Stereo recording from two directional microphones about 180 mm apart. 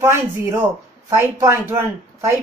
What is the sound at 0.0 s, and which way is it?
Speech, 15° right (ahead or behind).